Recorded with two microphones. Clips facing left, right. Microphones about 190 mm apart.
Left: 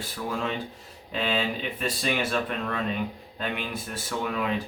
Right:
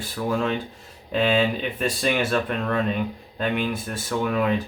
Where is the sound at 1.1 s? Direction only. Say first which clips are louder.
Right 7 dB; 50° right (ahead or behind).